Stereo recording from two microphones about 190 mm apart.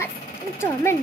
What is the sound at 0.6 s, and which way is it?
Speech, 15° left (ahead or behind).